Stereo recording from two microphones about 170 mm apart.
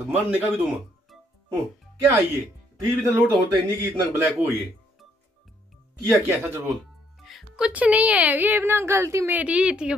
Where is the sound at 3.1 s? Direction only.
15° right (ahead or behind).